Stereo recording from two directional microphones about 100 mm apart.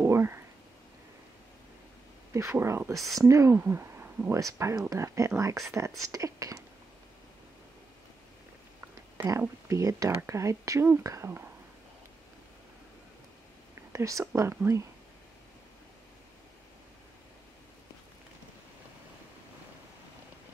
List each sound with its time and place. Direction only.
0.0 s a sound: 25° right (ahead or behind)
2.3 s speech: 25° right (ahead or behind)
8.8 s speech: 25° right (ahead or behind)
13.9 s speech: 35° right (ahead or behind)